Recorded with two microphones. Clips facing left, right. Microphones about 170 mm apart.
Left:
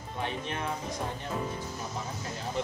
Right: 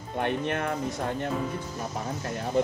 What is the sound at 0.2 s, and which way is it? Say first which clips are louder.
Speech: right 7 dB; 60° right (ahead or behind).